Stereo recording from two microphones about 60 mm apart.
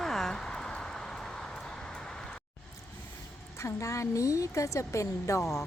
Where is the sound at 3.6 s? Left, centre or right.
Left.